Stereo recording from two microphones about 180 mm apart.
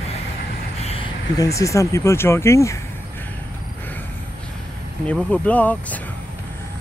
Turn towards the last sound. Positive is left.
turn(degrees=10)  # may be behind; listen again after turning